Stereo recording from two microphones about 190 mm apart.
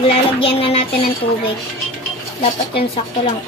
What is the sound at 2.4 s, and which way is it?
Speech, 30° left (ahead or behind).